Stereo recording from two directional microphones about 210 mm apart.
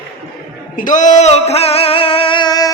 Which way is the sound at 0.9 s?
35° left (ahead or behind).